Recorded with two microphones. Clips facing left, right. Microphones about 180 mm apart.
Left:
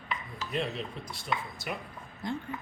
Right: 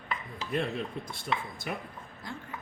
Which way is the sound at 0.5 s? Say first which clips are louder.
Right 2 dB; 55° right (ahead or behind).